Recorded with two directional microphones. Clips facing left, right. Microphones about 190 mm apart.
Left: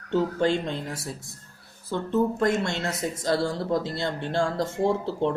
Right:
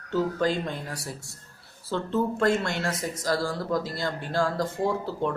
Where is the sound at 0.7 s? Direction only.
25° left (ahead or behind).